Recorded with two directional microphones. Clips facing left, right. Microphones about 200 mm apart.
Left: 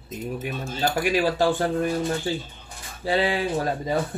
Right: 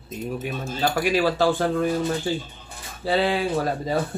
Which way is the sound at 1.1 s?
15° left (ahead or behind).